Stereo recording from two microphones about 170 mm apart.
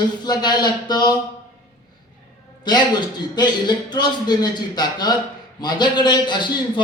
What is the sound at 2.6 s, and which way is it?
A man's voice, 25° left (ahead or behind).